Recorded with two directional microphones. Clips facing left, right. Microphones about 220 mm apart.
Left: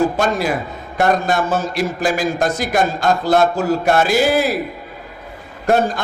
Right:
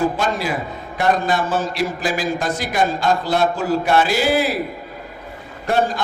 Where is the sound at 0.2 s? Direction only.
50° left (ahead or behind).